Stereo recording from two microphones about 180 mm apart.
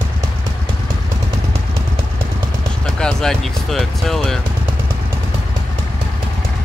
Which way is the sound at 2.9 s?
5° left (ahead or behind).